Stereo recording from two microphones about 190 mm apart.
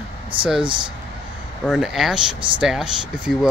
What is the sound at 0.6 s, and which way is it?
Speech, 25° right (ahead or behind).